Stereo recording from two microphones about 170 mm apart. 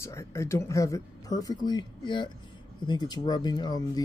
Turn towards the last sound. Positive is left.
turn(degrees=25)  # may be behind; listen again after turning